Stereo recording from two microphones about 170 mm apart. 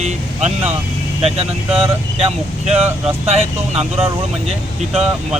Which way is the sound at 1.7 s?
35° right (ahead or behind).